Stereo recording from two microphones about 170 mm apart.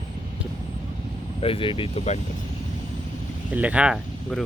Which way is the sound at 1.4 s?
30° left (ahead or behind).